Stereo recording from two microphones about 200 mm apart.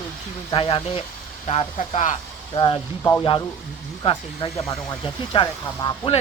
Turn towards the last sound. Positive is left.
turn(degrees=25)  # may be behind; listen again after turning